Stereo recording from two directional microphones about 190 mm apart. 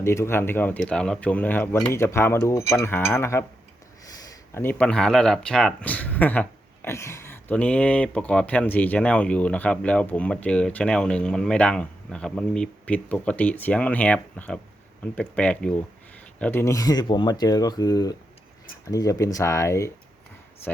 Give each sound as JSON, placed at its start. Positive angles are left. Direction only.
{"t": 0.0, "sound": "speech", "side_deg": 15}
{"t": 4.5, "sound": "speech", "side_deg": 10}